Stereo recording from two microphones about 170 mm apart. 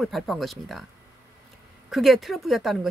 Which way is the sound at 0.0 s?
Centre (ahead or behind).